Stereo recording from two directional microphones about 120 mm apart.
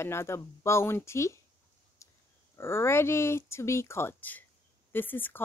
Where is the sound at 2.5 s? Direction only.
20° left (ahead or behind).